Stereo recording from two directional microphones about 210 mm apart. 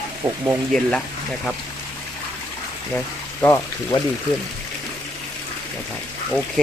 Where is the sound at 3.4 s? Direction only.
15° left (ahead or behind).